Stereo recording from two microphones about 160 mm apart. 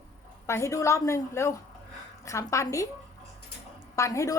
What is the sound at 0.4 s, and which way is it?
A woman's voice, 15° left (ahead or behind).